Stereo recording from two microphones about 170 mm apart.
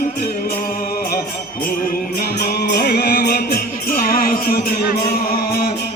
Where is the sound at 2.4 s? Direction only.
70° left (ahead or behind).